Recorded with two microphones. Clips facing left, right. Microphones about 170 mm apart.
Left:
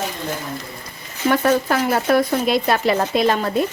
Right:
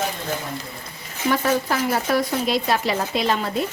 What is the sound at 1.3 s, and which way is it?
Speech, 60° left (ahead or behind).